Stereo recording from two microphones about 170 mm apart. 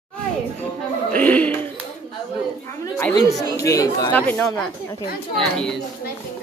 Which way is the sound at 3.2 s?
20° left (ahead or behind).